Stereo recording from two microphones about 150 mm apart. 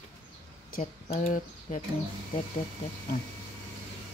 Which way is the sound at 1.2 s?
60° left (ahead or behind).